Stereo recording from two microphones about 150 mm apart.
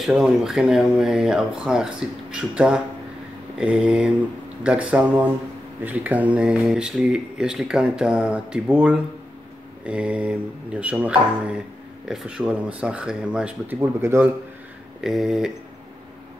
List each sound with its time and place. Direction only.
0.0 s speech: 5° right (ahead or behind)
15.0 s speech: 5° right (ahead or behind)